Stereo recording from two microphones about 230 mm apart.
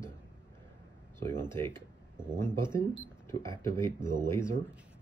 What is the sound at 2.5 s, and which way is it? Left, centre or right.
Speech, centre.